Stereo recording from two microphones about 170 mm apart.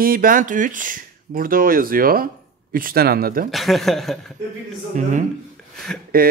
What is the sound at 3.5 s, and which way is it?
Speech, centre (ahead or behind).